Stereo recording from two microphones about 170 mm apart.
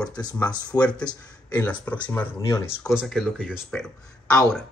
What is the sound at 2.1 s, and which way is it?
Speech, 15° left (ahead or behind).